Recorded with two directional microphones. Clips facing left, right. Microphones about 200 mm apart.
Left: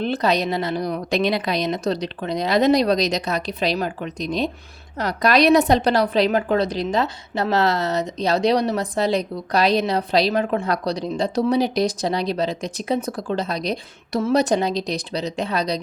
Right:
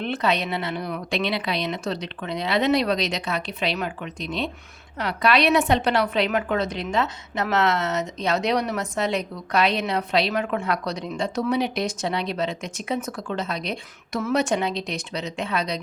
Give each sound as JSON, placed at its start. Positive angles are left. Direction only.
{"t": 0.0, "sound": "a woman's voice", "side_deg": 35}